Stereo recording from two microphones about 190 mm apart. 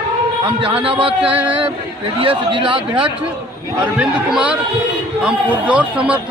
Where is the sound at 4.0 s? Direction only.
5° right (ahead or behind).